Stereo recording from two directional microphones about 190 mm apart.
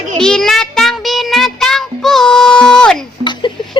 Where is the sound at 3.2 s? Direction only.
25° left (ahead or behind).